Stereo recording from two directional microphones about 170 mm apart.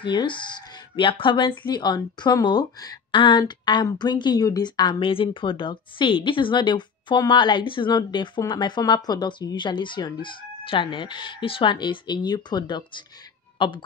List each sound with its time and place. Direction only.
0.0 s a woman's voice: 30° left (ahead or behind)